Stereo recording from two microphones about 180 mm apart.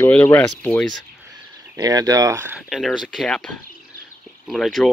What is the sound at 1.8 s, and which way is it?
Speech, 20° right (ahead or behind).